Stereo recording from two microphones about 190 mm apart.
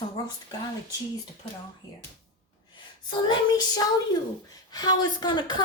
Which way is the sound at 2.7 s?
25° left (ahead or behind).